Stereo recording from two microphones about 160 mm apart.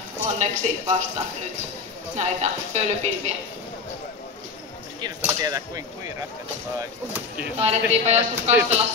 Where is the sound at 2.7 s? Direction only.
45° right (ahead or behind).